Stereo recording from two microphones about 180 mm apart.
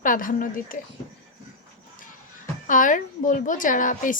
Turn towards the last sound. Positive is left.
turn(degrees=45)  # may be behind; listen again after turning